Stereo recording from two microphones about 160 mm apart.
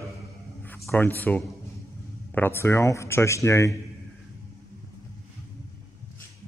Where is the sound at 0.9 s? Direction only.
10° left (ahead or behind).